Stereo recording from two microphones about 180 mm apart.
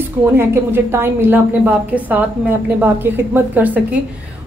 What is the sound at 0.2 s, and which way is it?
A woman's voice, 15° right (ahead or behind).